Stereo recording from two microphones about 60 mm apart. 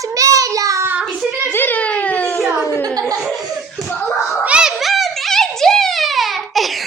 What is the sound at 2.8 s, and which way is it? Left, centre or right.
Speech, right.